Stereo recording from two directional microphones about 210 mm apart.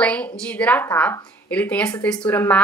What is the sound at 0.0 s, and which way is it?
A woman's voice, 5° left (ahead or behind).